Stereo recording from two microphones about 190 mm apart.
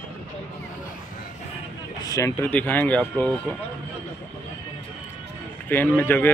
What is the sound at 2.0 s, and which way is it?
Speech, 15° left (ahead or behind).